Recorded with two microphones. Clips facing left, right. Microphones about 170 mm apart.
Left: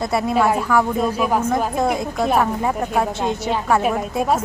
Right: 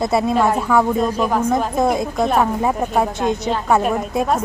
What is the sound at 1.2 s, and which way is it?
A woman's voice, 10° left (ahead or behind).